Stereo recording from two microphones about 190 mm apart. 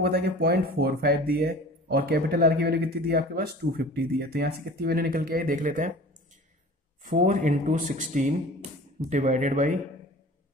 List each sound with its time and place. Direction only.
0.0 s speech: 60° right (ahead or behind)
7.1 s speech: 40° right (ahead or behind)